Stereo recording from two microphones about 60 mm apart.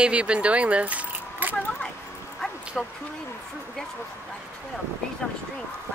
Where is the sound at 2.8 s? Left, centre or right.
Centre.